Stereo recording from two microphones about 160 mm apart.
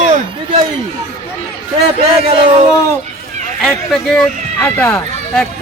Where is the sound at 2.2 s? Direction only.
40° right (ahead or behind).